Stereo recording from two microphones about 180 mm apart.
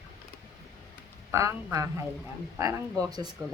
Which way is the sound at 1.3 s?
15° right (ahead or behind).